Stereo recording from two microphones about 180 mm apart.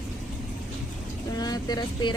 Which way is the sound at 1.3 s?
20° left (ahead or behind).